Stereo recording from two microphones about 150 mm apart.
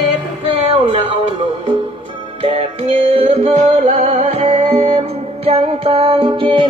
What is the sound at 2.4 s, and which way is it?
Music, 40° right (ahead or behind).